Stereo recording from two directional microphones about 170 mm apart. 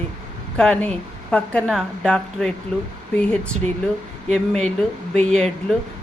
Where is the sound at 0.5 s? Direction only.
5° left (ahead or behind).